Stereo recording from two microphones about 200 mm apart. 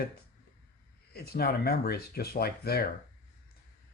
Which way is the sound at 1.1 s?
50° left (ahead or behind).